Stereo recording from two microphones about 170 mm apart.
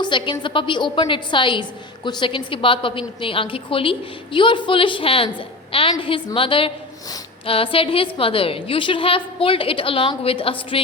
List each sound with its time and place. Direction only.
0.0 s a woman's voice: 30° left (ahead or behind)